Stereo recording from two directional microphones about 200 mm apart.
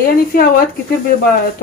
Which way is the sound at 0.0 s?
50° left (ahead or behind).